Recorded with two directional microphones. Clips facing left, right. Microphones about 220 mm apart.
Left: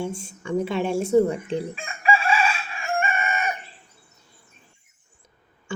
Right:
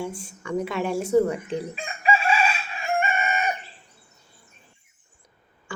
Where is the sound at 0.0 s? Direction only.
25° left (ahead or behind).